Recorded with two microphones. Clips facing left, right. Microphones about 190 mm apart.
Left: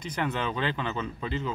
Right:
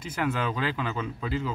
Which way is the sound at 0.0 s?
5° right (ahead or behind).